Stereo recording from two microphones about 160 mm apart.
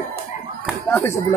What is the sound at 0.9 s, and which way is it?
Speech, 15° left (ahead or behind).